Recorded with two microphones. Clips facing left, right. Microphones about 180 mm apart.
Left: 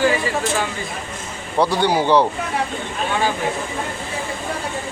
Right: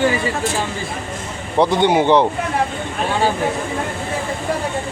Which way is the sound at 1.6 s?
20° right (ahead or behind).